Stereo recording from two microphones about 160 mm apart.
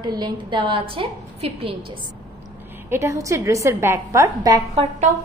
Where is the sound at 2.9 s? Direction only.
20° right (ahead or behind).